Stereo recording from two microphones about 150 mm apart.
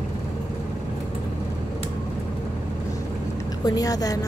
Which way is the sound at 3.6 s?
25° left (ahead or behind).